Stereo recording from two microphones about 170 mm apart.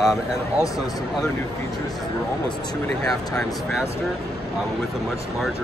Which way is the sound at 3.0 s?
5° left (ahead or behind).